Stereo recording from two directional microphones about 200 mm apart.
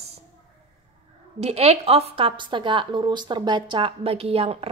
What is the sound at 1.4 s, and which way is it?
A woman's voice, 30° right (ahead or behind).